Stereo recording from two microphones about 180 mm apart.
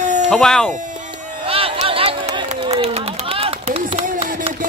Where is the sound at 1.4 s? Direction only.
30° right (ahead or behind).